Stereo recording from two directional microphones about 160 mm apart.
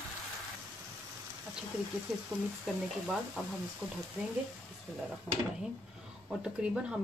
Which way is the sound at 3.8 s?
20° right (ahead or behind).